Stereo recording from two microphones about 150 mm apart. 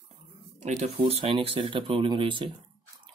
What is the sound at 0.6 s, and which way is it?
Speech, 50° right (ahead or behind).